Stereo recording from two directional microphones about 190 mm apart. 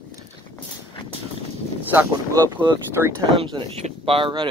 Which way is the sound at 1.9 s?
20° right (ahead or behind).